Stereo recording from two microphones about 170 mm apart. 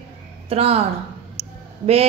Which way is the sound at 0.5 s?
35° right (ahead or behind).